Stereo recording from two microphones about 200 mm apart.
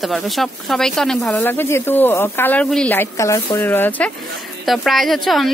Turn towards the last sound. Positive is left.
turn(degrees=0)  # may be behind; listen again after turning